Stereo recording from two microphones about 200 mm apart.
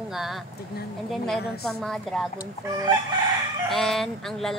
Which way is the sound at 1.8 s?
Centre (ahead or behind).